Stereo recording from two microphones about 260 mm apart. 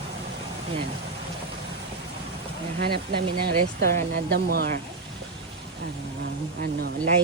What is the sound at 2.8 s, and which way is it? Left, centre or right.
Speech, right.